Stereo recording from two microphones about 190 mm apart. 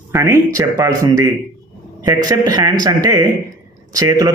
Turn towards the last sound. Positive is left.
turn(degrees=-20)  # may be behind; listen again after turning